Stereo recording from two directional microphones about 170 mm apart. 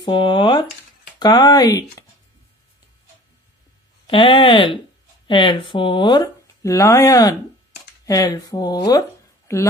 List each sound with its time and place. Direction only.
0.0 s speech: 30° left (ahead or behind)
4.1 s a woman's voice: 30° left (ahead or behind)